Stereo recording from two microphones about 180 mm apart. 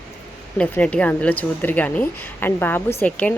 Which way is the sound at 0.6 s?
5° left (ahead or behind).